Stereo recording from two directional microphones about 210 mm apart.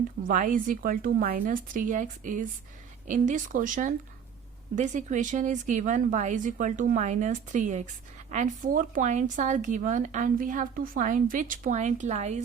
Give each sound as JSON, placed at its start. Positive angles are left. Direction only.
{"t": 0.3, "sound": "speech", "side_deg": -40}